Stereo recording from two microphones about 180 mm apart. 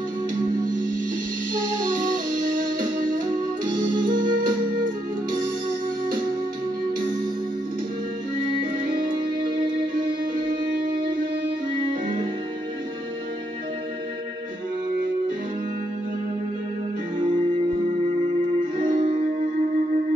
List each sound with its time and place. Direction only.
1.5 s music: 50° right (ahead or behind)
3.6 s music: 25° right (ahead or behind)
4.3 s music: 50° right (ahead or behind)
10.3 s music: 50° right (ahead or behind)
11.7 s music: 25° right (ahead or behind)
18.8 s music: 30° right (ahead or behind)